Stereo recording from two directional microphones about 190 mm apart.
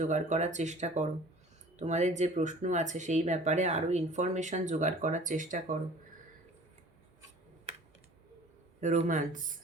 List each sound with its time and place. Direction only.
0.0 s speech: 40° right (ahead or behind)
8.8 s speech: 40° right (ahead or behind)